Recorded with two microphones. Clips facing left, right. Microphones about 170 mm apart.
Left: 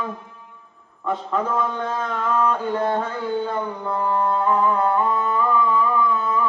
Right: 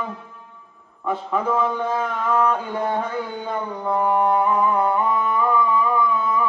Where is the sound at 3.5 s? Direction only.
15° right (ahead or behind).